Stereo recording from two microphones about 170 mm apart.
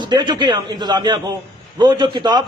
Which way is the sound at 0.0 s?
25° right (ahead or behind).